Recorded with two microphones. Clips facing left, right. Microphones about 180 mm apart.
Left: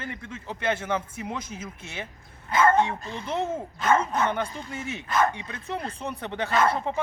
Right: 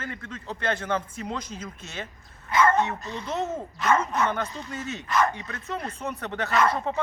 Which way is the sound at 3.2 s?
10° left (ahead or behind).